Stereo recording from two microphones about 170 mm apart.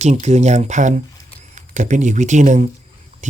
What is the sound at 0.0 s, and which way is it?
Speech, 40° right (ahead or behind).